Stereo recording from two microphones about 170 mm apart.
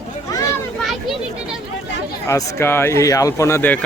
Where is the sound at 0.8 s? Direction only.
Centre (ahead or behind).